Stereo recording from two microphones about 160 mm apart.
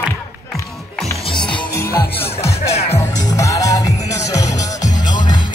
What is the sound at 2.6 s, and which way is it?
Music, 40° left (ahead or behind).